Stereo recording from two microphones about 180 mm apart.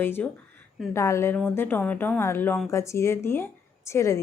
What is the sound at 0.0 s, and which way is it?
A woman's voice, 10° left (ahead or behind).